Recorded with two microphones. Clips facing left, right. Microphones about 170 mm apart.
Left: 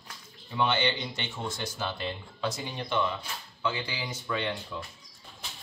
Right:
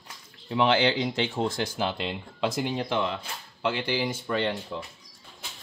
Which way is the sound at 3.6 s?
60° right (ahead or behind).